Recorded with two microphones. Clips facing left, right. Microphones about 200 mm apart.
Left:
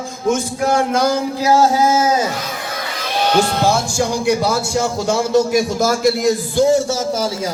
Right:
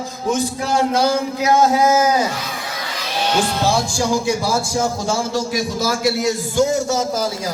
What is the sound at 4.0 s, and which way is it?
A man's voice, 60° left (ahead or behind).